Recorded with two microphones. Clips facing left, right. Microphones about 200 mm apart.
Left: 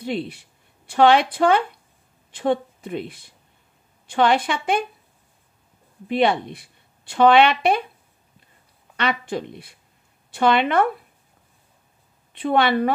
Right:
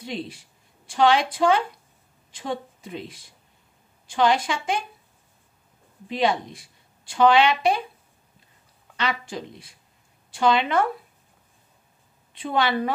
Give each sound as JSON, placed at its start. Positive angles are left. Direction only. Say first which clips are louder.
{"t": 0.0, "sound": "a woman's voice", "louder": "left 6 dB", "side_deg": 60}
{"t": 6.0, "sound": "a woman's voice", "louder": "left 4 dB", "side_deg": 60}
{"t": 8.9, "sound": "a woman's voice", "louder": "left 4 dB", "side_deg": 60}
{"t": 12.3, "sound": "a woman's voice", "louder": "left 5 dB", "side_deg": 60}